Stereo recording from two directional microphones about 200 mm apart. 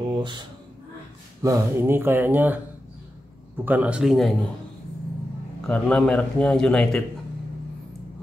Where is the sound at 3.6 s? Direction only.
10° right (ahead or behind).